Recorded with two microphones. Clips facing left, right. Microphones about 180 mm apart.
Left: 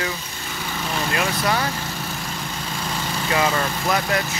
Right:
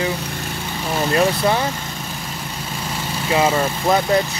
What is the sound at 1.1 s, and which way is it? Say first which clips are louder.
Speech: right 6 dB; 30° right (ahead or behind).